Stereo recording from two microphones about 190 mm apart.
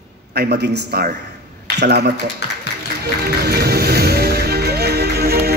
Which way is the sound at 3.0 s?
55° right (ahead or behind).